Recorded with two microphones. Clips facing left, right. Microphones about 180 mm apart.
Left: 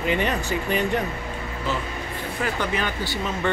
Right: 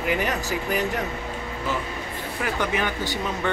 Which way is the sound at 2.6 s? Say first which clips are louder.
Right 1 dB; 15° right (ahead or behind).